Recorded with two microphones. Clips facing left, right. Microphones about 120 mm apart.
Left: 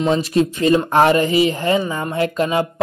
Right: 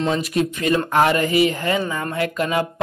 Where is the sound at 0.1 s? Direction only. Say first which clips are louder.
Left 4 dB; 30° left (ahead or behind).